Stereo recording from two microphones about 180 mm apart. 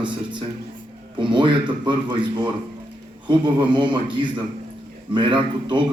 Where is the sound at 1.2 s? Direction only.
25° right (ahead or behind).